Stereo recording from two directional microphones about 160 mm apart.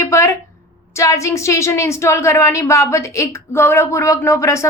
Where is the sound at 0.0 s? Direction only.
20° left (ahead or behind).